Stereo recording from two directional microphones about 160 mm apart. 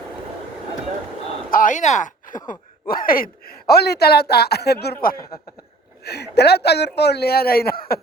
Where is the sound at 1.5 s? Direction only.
55° left (ahead or behind).